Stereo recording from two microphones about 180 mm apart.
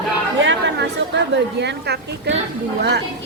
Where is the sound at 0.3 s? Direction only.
85° right.